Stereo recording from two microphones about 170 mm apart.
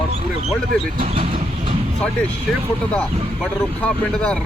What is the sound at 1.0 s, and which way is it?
Vehicle, 35° right (ahead or behind).